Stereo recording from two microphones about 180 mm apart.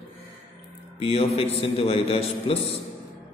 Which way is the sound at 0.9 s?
35° left (ahead or behind).